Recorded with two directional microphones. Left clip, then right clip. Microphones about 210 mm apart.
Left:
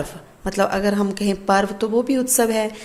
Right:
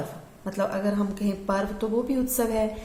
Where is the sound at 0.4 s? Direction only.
35° left (ahead or behind).